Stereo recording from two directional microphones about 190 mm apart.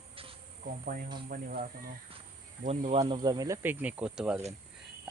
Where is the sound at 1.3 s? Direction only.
50° right (ahead or behind).